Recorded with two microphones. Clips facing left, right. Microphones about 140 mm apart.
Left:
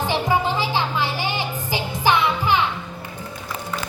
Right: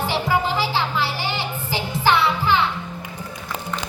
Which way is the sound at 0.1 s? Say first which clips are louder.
Left 1 dB; 20° left (ahead or behind).